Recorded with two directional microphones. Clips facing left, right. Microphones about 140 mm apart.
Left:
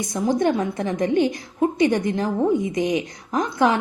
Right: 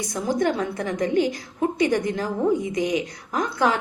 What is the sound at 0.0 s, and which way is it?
A woman's voice, 20° left (ahead or behind).